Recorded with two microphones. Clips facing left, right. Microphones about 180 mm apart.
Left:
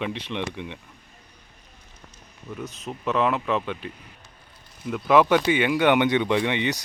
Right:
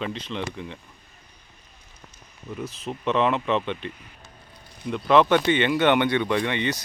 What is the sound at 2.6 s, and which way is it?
Speech, centre (ahead or behind).